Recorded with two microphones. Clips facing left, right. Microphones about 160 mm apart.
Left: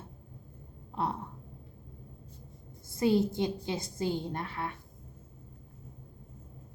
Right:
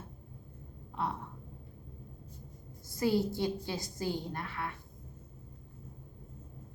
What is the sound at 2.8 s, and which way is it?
A woman's voice, 20° left (ahead or behind).